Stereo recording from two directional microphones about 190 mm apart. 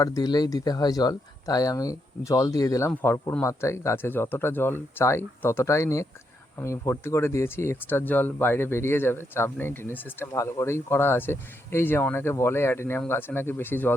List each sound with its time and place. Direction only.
0.0 s speech: 20° left (ahead or behind)